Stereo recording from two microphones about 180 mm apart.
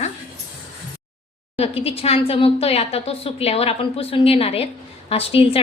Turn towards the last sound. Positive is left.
turn(degrees=30)  # may be behind; listen again after turning